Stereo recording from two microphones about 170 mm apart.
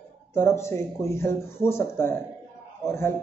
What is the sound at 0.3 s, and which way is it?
Speech, 15° left (ahead or behind).